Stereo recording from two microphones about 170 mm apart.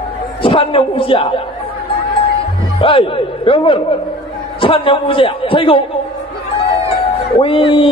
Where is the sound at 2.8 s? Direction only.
30° left (ahead or behind).